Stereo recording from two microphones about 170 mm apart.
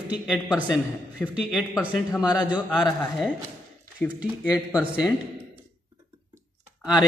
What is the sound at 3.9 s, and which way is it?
Speech, 10° right (ahead or behind).